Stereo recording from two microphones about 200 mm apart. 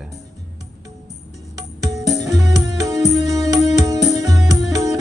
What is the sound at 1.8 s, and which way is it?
Music, 15° right (ahead or behind).